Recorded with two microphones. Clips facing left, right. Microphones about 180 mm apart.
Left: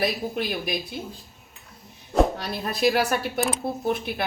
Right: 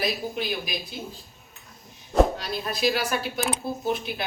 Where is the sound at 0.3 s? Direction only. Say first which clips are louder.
Left 3 dB; 60° left (ahead or behind).